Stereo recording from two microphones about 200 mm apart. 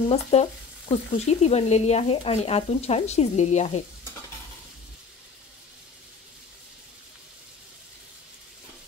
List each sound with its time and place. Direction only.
0.1 s speech: 30° left (ahead or behind)